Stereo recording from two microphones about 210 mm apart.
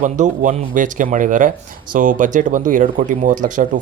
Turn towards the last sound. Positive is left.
turn(degrees=-40)  # may be behind; listen again after turning